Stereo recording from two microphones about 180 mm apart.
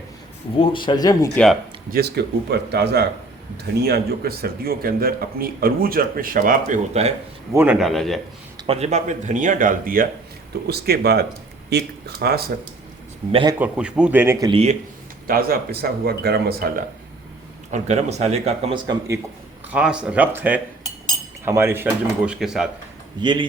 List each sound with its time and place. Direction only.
0.5 s speech: 30° left (ahead or behind)
1.9 s a man's voice: 65° right (ahead or behind); by 7.1 s 40° right (ahead or behind)
7.5 s speech: 10° right (ahead or behind)
8.5 s a man's voice: 30° right (ahead or behind); by 12.4 s 65° right (ahead or behind)
13.3 s a man's voice: 25° right (ahead or behind)
13.6 s speech: 5° right (ahead or behind)
14.4 s speech: 35° right (ahead or behind)
15.3 s a man's voice: 55° right (ahead or behind)
17.7 s speech: 40° right (ahead or behind)
18.9 s speech: 15° right (ahead or behind)
19.7 s speech: 5° right (ahead or behind)
23.2 s a man's voice: 25° right (ahead or behind)